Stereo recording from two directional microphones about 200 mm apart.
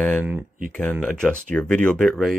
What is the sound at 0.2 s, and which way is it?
Speech, 10° right (ahead or behind).